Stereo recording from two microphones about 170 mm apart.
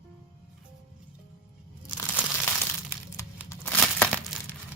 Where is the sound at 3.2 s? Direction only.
15° left (ahead or behind).